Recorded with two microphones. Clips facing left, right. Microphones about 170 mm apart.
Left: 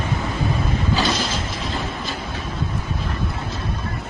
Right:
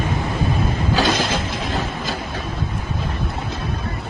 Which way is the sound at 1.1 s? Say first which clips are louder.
Right 3 dB; 55° right (ahead or behind).